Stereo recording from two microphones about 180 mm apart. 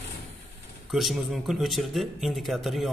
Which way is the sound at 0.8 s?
Centre (ahead or behind).